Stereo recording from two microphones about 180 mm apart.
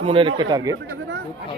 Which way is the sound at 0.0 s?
30° right (ahead or behind).